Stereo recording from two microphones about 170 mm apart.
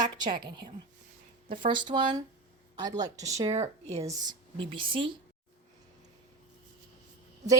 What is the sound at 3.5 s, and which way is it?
Speech, 40° right (ahead or behind).